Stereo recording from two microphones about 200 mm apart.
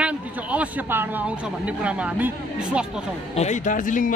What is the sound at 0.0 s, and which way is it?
A man's voice, 5° right (ahead or behind).